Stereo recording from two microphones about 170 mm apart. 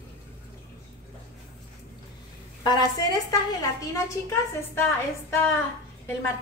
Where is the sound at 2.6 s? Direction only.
20° left (ahead or behind).